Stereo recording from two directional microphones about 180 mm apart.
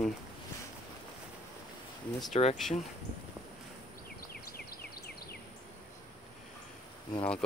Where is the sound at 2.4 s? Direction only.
35° left (ahead or behind).